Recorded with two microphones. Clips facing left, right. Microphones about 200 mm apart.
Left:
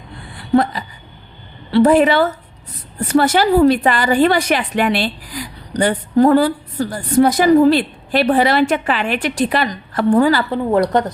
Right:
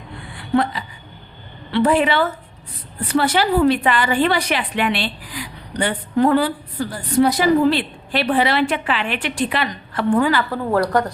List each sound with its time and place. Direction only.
0.3 s a sound: 40° left (ahead or behind)
1.7 s a woman's voice: 40° left (ahead or behind)
10.5 s a woman's voice: 20° left (ahead or behind)